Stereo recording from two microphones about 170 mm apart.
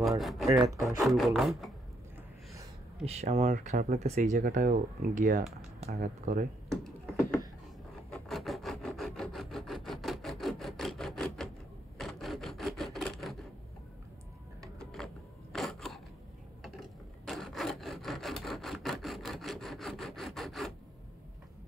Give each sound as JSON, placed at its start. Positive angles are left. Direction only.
{"t": 0.2, "sound": "speech", "side_deg": 0}
{"t": 3.1, "sound": "speech", "side_deg": -40}
{"t": 6.7, "sound": "a sound", "side_deg": 0}
{"t": 8.1, "sound": "rub", "side_deg": 0}
{"t": 15.5, "sound": "a sound", "side_deg": 0}
{"t": 17.3, "sound": "rub", "side_deg": 0}